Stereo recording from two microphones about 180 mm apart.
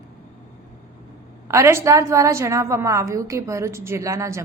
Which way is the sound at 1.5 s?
15° right (ahead or behind).